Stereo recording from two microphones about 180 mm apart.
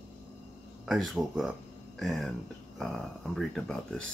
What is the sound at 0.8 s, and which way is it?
Speech, centre (ahead or behind).